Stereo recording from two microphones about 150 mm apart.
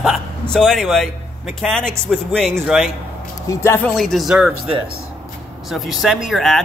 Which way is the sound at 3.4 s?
15° left (ahead or behind).